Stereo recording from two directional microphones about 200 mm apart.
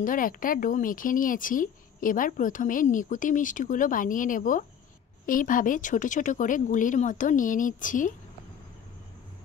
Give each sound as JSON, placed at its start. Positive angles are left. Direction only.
{"t": 0.0, "sound": "speech", "side_deg": 45}